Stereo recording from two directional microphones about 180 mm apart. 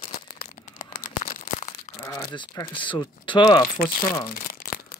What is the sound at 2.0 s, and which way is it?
Crumpling, 15° left (ahead or behind).